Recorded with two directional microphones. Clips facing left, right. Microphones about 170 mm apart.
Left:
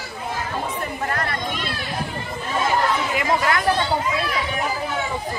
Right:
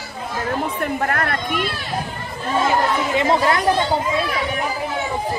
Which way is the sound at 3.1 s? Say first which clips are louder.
Right 7 dB; 25° right (ahead or behind).